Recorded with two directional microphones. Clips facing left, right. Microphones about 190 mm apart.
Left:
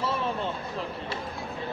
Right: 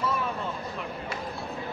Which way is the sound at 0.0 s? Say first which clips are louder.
Left 1 dB; 30° left (ahead or behind).